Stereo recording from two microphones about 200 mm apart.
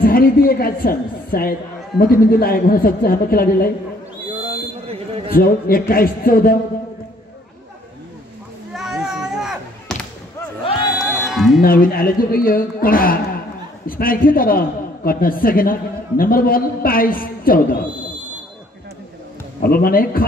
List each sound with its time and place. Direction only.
0.0 s a man's voice: 45° left (ahead or behind)
4.3 s a sound: 30° right (ahead or behind)
5.3 s a man's voice: 50° left (ahead or behind)
8.7 s a sound: 5° right (ahead or behind)
11.0 s music: centre (ahead or behind)
11.6 s a man's voice: 45° left (ahead or behind)
19.6 s a man's voice: 50° left (ahead or behind)